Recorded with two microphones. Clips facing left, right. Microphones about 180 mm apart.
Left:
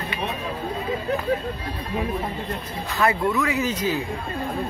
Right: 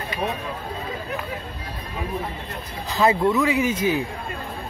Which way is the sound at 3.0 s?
20° right (ahead or behind).